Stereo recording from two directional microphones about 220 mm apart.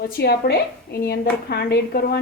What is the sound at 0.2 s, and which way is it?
A woman's voice, 45° left (ahead or behind).